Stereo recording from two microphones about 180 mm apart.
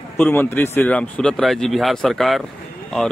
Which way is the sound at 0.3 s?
10° left (ahead or behind).